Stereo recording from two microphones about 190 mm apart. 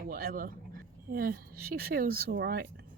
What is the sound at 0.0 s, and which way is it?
Speech, 50° right (ahead or behind).